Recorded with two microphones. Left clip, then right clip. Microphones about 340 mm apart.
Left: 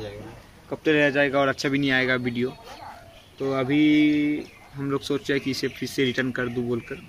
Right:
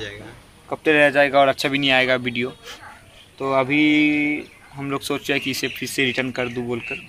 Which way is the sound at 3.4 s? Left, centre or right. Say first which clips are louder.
Right 4 dB; right.